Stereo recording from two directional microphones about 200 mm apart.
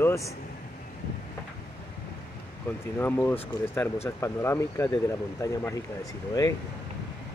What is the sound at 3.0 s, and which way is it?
Speech, 10° left (ahead or behind).